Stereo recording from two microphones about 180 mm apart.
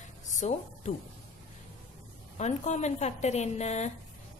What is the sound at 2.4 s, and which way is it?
Speech, 40° left (ahead or behind).